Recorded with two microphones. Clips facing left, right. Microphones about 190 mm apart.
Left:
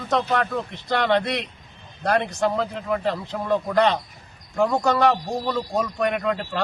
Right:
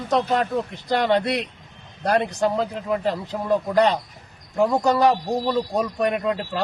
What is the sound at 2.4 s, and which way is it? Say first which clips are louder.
Speech: right 1 dB; 10° right (ahead or behind).